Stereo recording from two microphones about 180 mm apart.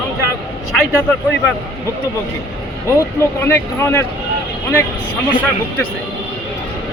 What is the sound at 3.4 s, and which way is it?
Speech, 15° left (ahead or behind).